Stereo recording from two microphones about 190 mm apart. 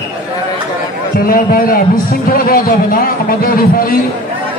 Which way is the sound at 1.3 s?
50° left (ahead or behind).